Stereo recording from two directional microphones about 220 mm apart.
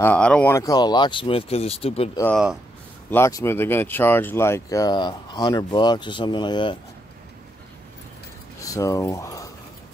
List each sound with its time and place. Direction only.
0.0 s speech: 5° left (ahead or behind); by 2.0 s 25° left (ahead or behind)
2.3 s speech: 5° right (ahead or behind)
3.1 s speech: 15° left (ahead or behind)
8.5 s speech: 15° left (ahead or behind)